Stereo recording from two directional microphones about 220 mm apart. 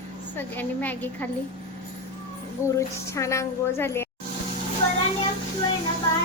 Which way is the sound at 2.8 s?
15° left (ahead or behind).